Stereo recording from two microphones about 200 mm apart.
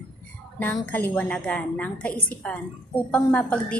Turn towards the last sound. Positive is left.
turn(degrees=5)  # may be behind; listen again after turning